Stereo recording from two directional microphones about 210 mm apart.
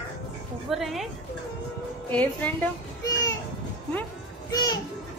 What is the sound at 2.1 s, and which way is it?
Speech, 5° left (ahead or behind).